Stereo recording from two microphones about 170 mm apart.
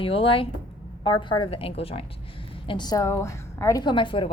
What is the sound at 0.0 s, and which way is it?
A woman's voice, 30° left (ahead or behind).